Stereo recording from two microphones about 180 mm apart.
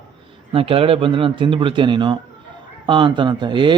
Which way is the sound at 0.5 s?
30° right (ahead or behind).